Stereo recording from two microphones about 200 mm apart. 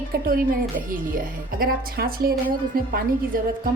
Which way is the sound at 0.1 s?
45° right (ahead or behind).